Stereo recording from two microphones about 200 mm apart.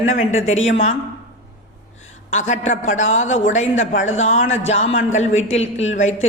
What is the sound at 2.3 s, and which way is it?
A man's voice, 35° left (ahead or behind).